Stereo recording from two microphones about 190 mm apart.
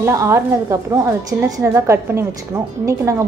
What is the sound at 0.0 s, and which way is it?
A woman's voice, 15° right (ahead or behind).